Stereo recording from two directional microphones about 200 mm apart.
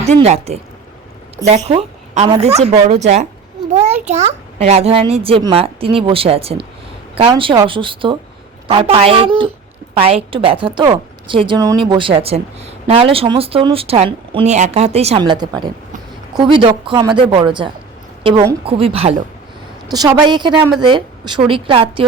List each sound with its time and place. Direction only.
0.0 s a woman's voice: 30° right (ahead or behind)
3.7 s a sound: 35° right (ahead or behind)
4.0 s a woman's voice: 35° right (ahead or behind)
19.9 s speech: 20° right (ahead or behind)